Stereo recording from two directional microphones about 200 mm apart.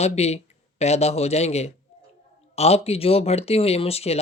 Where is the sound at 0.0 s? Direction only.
30° left (ahead or behind).